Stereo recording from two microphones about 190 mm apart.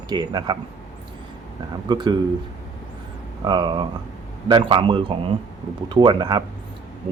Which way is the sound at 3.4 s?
25° right (ahead or behind).